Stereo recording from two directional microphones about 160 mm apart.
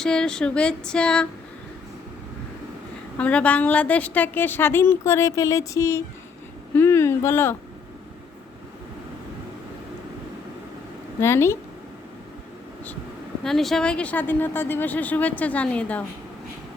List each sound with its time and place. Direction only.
0.0 s a sound: 5° left (ahead or behind)
3.2 s a woman's voice: 10° left (ahead or behind)
11.2 s a woman's voice: 15° left (ahead or behind)
13.4 s a woman's voice: centre (ahead or behind)